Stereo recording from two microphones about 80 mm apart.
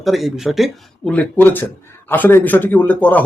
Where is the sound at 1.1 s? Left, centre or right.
Left.